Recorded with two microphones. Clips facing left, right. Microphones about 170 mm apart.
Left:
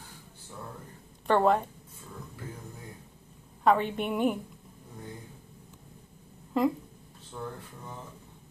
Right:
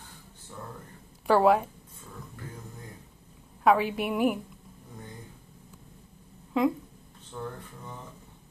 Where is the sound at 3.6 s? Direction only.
5° right (ahead or behind).